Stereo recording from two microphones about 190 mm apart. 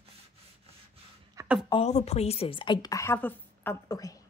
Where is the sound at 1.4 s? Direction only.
15° right (ahead or behind).